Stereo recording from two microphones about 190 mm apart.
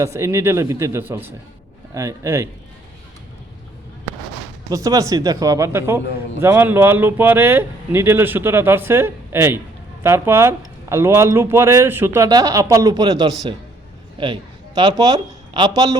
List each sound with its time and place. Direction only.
0.0 s speech: 15° right (ahead or behind)
4.7 s speech: 20° right (ahead or behind)
14.8 s speech: 20° right (ahead or behind)